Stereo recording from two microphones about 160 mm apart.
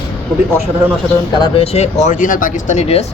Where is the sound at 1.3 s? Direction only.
35° left (ahead or behind).